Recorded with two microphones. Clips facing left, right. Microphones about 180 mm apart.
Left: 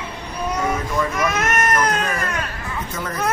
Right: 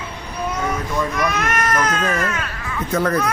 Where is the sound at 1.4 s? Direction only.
25° left (ahead or behind).